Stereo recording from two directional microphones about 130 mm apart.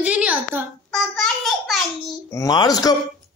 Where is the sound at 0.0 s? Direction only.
10° right (ahead or behind).